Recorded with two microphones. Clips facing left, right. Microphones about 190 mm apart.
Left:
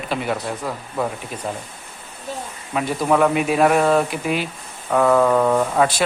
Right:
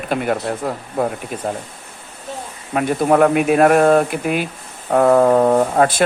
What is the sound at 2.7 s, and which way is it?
Speech, 55° right (ahead or behind).